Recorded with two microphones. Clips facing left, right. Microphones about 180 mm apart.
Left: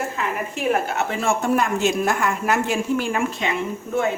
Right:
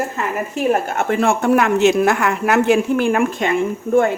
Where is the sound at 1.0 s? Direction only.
55° right (ahead or behind).